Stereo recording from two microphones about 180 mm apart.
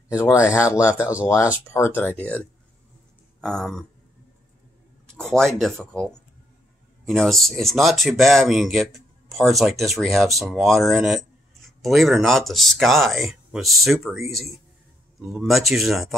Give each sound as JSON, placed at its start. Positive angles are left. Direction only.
{"t": 0.1, "sound": "speech", "side_deg": 15}
{"t": 0.7, "sound": "speech", "side_deg": -5}
{"t": 1.2, "sound": "speech", "side_deg": 15}
{"t": 5.1, "sound": "speech", "side_deg": 5}